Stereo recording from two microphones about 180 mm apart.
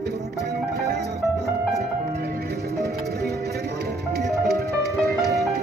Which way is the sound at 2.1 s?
60° right (ahead or behind).